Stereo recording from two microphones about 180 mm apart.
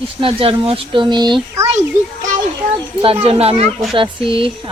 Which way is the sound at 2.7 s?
30° right (ahead or behind).